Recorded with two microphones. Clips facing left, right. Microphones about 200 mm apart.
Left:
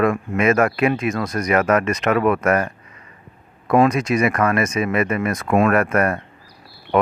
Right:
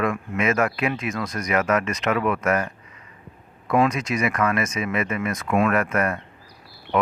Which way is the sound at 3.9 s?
55° left (ahead or behind).